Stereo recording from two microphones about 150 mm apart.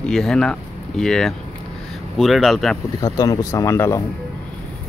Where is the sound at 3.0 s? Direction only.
25° left (ahead or behind).